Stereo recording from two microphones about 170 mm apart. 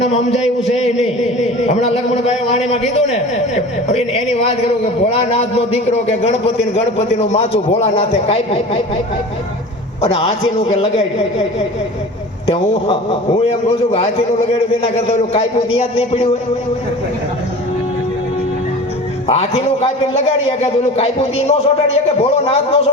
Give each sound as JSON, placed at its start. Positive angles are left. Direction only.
{"t": 0.7, "sound": "a man's voice", "side_deg": 40}
{"t": 10.0, "sound": "a man's voice", "side_deg": 35}
{"t": 12.5, "sound": "a man's voice", "side_deg": 35}
{"t": 19.3, "sound": "a man's voice", "side_deg": 35}